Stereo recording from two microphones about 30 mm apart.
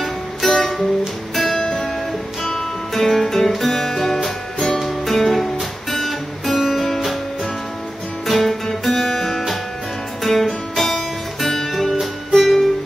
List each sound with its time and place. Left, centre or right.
0.4 s music: centre
1.6 s music: left
2.9 s music: centre
6.5 s music: centre
8.3 s music: centre